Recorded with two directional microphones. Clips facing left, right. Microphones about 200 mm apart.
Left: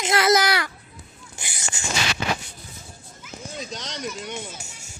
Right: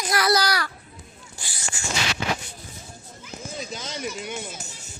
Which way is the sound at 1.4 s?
20° left (ahead or behind).